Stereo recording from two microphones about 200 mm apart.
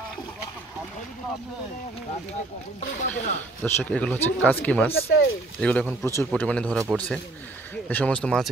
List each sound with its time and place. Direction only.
3.0 s speech: 35° left (ahead or behind)
3.6 s speech: 10° left (ahead or behind)
5.1 s speech: 80° left
5.6 s speech: 5° left (ahead or behind)
7.9 s speech: 5° left (ahead or behind)